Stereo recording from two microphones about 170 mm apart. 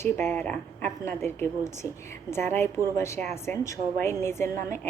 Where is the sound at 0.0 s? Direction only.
15° left (ahead or behind).